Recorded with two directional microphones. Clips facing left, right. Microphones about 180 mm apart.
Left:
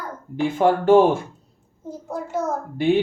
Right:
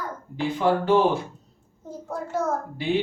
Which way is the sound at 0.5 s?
50° left (ahead or behind).